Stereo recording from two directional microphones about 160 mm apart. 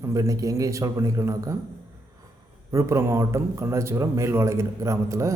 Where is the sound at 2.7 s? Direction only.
20° right (ahead or behind).